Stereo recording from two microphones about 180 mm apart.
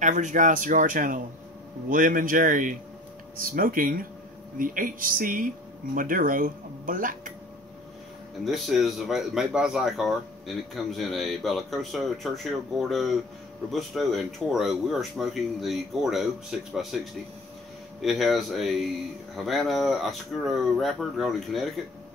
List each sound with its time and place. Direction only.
0.0 s speech: 45° right (ahead or behind)
8.5 s speech: centre (ahead or behind)